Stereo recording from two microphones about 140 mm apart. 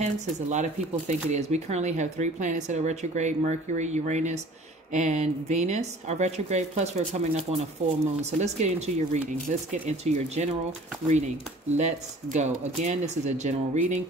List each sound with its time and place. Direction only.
0.0 s speech: 55° right (ahead or behind)
11.7 s speech: 55° right (ahead or behind)